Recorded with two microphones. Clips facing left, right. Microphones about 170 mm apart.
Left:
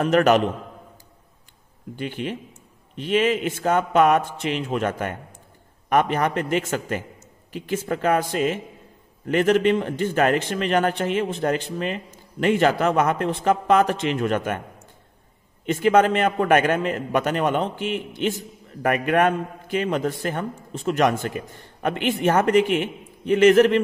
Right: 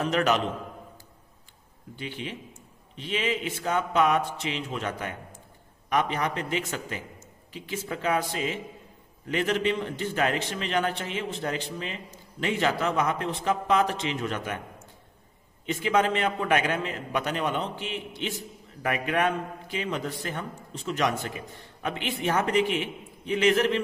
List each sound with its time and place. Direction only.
0.0 s a man's voice: 50° left (ahead or behind)
2.0 s a man's voice: 55° left (ahead or behind)
15.6 s a man's voice: 50° left (ahead or behind)